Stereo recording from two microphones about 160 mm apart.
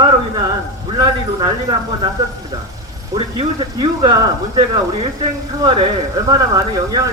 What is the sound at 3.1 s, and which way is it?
A man's voice, 30° right (ahead or behind).